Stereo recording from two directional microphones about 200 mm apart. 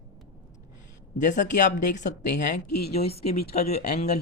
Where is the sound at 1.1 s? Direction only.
40° left (ahead or behind).